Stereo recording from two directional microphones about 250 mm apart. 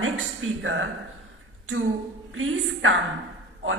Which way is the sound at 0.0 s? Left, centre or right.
Right.